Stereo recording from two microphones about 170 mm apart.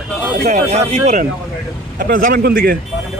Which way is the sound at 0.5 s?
40° right (ahead or behind).